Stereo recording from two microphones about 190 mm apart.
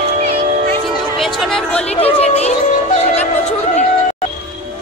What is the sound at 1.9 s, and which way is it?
Speech, 30° left (ahead or behind).